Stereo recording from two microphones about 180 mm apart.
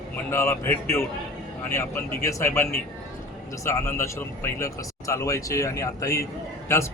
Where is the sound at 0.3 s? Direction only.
15° left (ahead or behind).